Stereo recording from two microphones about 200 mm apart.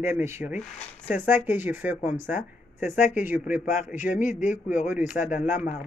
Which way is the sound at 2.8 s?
40° left (ahead or behind).